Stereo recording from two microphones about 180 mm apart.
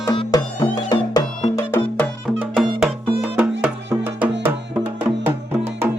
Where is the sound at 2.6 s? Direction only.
5° right (ahead or behind).